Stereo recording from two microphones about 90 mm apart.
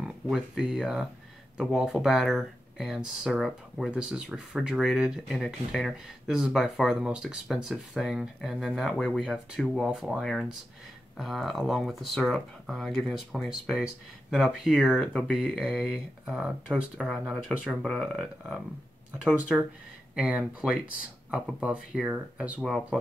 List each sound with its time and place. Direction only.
0.0 s speech: 5° right (ahead or behind)
20.2 s speech: 10° right (ahead or behind)